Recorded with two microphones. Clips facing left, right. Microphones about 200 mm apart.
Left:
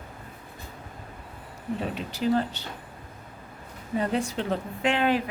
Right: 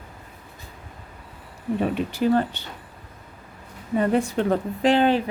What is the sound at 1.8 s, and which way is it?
Speech, 55° right (ahead or behind).